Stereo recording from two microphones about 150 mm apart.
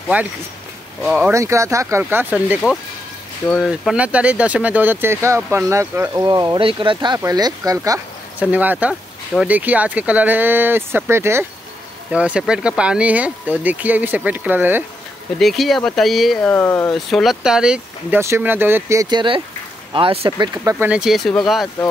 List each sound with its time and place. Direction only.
0.1 s speech: 10° right (ahead or behind)
1.3 s speech: 20° right (ahead or behind)
3.4 s speech: 5° left (ahead or behind)
3.9 s speech: 10° right (ahead or behind)
8.4 s speech: 10° right (ahead or behind)
15.3 s speech: centre (ahead or behind)
16.4 s speech: 15° left (ahead or behind)
16.9 s speech: centre (ahead or behind)
18.2 s speech: 15° right (ahead or behind); by 20.4 s 35° right (ahead or behind)
20.5 s speech: 20° right (ahead or behind)
20.9 s speech: 5° right (ahead or behind)